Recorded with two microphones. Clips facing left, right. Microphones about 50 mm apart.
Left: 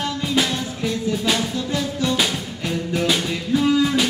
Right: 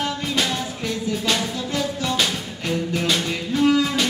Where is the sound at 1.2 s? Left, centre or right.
Centre.